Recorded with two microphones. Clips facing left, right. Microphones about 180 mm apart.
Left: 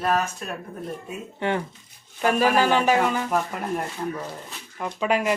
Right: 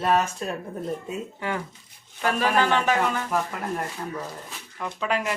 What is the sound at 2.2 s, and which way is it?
Speech, 15° left (ahead or behind).